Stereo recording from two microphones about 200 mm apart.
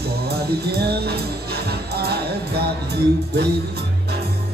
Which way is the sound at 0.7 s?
55° right (ahead or behind).